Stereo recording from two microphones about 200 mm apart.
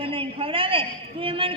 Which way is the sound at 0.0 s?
25° right (ahead or behind).